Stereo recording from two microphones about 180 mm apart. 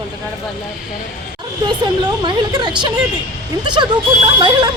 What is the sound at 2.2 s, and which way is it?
Speech, 25° right (ahead or behind).